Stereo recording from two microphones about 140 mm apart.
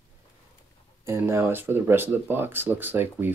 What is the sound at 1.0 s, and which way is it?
Speech, 15° right (ahead or behind).